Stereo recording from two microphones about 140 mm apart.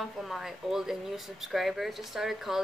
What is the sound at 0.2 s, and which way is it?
Speech, centre (ahead or behind).